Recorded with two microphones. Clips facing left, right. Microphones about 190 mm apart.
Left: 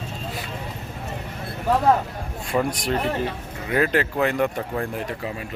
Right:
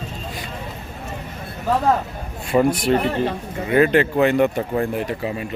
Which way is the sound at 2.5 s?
15° right (ahead or behind).